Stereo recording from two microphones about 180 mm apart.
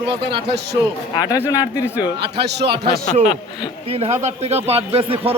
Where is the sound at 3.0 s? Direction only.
40° left (ahead or behind).